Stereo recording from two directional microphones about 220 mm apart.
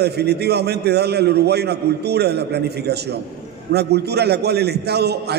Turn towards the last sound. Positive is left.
turn(degrees=-50)  # may be behind; listen again after turning